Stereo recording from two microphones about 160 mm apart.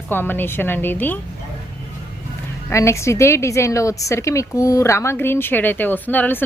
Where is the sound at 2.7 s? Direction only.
15° left (ahead or behind).